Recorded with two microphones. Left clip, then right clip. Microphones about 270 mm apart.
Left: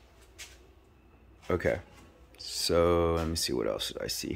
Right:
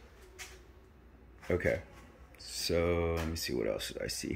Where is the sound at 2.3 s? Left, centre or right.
Centre.